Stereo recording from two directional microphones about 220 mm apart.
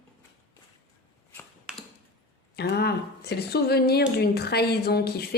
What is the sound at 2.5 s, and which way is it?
A woman's voice, 50° left (ahead or behind).